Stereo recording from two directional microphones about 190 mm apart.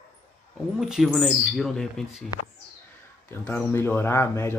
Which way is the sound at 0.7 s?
5° right (ahead or behind).